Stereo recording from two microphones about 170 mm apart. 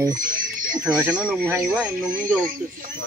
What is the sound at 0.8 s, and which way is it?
Speech, 5° right (ahead or behind).